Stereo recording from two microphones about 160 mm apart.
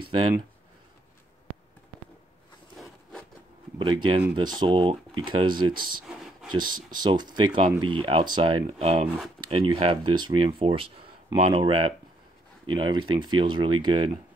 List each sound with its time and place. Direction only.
2.8 s wood: 5° left (ahead or behind)
3.7 s speech: 30° right (ahead or behind)